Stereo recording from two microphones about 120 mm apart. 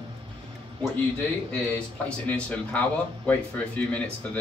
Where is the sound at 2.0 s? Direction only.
10° left (ahead or behind).